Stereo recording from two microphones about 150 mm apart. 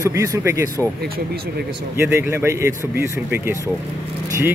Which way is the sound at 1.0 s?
90° right.